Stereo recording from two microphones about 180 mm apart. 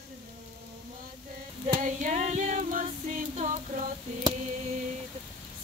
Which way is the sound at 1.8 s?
40° right (ahead or behind).